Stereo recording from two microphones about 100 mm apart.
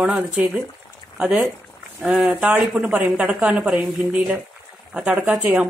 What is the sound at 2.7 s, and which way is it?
A woman's voice, 5° right (ahead or behind).